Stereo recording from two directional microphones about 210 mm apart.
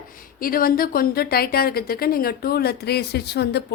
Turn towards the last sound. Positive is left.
turn(degrees=50)  # may be behind; listen again after turning